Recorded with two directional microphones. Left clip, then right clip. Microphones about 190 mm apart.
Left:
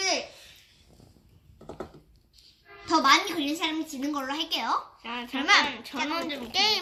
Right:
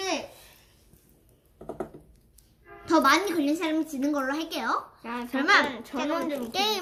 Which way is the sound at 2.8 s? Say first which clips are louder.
Even; 15° left (ahead or behind).